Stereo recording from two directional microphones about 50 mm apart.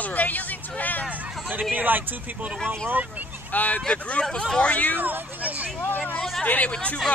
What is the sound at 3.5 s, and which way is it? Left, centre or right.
Speech, left.